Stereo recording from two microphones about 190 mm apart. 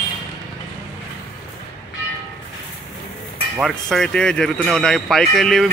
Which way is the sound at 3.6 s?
5° left (ahead or behind).